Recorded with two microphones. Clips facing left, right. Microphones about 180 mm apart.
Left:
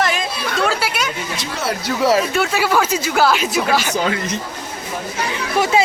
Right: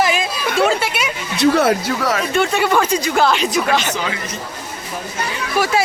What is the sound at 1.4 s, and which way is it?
Speech, 60° right (ahead or behind).